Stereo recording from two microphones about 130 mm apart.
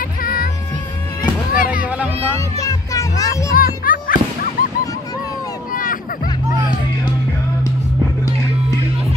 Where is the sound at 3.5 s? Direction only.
90° left.